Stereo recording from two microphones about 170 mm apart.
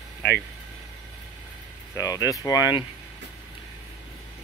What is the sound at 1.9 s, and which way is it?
Speech, 20° left (ahead or behind).